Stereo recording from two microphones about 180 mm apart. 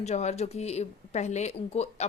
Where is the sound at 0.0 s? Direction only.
40° left (ahead or behind).